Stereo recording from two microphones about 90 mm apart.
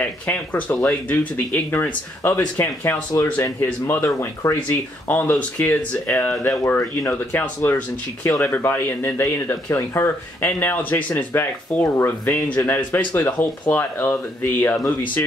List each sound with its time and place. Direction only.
0.0 s speech: 15° left (ahead or behind)
4.6 s speech: 20° left (ahead or behind)